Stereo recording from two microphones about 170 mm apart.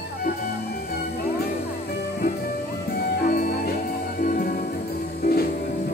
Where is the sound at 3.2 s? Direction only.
60° left (ahead or behind).